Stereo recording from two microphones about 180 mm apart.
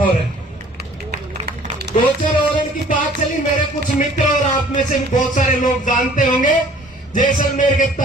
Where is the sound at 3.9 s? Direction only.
45° left (ahead or behind).